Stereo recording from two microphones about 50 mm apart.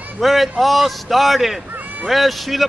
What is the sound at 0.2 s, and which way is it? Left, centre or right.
A man's voice, centre.